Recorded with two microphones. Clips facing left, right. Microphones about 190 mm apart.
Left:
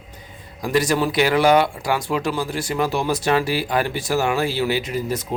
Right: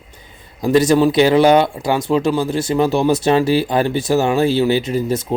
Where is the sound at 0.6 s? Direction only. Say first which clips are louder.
Right 7 dB; 25° right (ahead or behind).